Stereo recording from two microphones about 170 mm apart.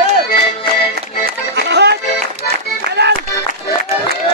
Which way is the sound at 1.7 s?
75° right (ahead or behind).